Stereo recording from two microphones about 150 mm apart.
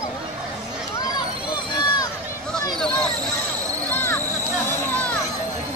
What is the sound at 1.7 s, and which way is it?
Run, 30° left (ahead or behind).